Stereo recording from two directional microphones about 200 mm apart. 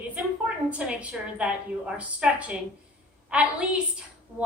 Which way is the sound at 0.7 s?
5° right (ahead or behind).